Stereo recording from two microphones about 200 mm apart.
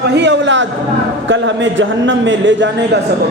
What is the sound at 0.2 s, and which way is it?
A man's voice, 65° right (ahead or behind).